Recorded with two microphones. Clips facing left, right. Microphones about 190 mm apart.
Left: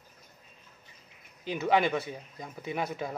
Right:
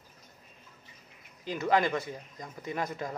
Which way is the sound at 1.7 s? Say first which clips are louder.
Left 1 dB; 10° left (ahead or behind).